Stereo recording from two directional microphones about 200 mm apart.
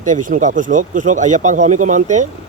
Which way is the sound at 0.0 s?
40° right (ahead or behind).